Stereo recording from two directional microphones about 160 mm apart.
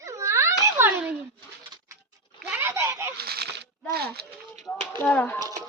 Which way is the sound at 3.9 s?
80° right.